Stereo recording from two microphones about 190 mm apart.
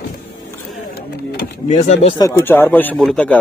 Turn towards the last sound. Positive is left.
turn(degrees=5)  # may be behind; listen again after turning